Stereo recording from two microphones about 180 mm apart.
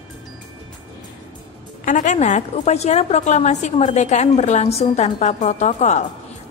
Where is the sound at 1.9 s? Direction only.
45° left (ahead or behind).